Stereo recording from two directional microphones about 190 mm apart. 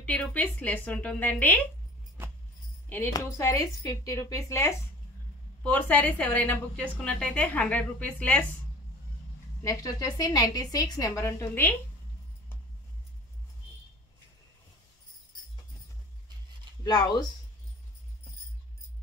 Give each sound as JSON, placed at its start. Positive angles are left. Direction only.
{"t": 0.0, "sound": "a woman's voice", "side_deg": 5}
{"t": 2.9, "sound": "a woman's voice", "side_deg": 15}
{"t": 9.6, "sound": "a woman's voice", "side_deg": 15}
{"t": 16.8, "sound": "a woman's voice", "side_deg": 20}